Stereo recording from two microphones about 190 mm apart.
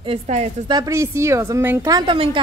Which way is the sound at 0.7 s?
20° right (ahead or behind).